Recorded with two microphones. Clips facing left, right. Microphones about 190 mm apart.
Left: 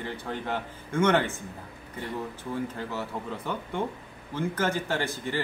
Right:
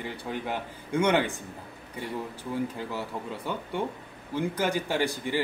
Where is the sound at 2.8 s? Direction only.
15° right (ahead or behind).